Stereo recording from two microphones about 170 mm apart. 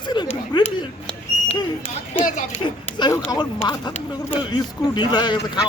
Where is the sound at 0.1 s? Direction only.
25° left (ahead or behind).